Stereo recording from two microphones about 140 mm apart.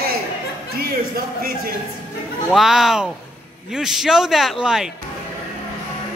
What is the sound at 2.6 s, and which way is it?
Speech, centre (ahead or behind).